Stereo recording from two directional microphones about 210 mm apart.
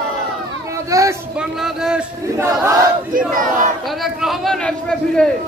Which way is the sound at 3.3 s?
40° right (ahead or behind).